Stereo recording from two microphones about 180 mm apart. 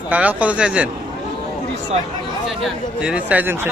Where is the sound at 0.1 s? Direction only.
10° right (ahead or behind).